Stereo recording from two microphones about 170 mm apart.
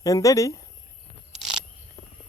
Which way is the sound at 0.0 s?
20° left (ahead or behind).